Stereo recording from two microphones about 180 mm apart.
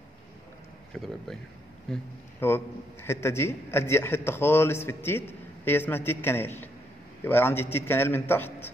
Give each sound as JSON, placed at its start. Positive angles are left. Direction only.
{"t": 0.9, "sound": "speech", "side_deg": 0}
{"t": 2.4, "sound": "a man's voice", "side_deg": 15}